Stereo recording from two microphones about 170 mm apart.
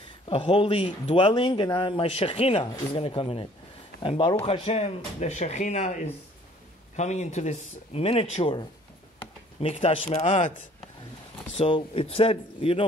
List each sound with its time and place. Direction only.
0.3 s speech: 30° left (ahead or behind)
11.5 s speech: 35° left (ahead or behind)